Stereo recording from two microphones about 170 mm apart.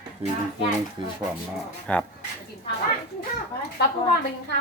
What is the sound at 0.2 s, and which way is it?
Speech, 35° right (ahead or behind).